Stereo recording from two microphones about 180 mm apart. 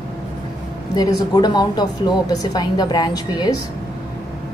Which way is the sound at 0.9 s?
20° left (ahead or behind).